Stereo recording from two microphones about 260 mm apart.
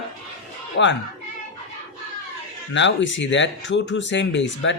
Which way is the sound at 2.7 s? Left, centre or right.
Left.